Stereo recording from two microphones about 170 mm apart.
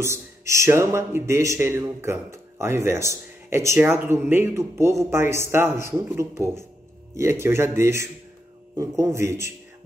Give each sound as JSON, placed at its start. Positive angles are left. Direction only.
{"t": 0.0, "sound": "a man's voice", "side_deg": -15}